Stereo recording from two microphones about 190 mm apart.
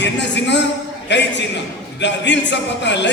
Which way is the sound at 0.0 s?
65° left (ahead or behind).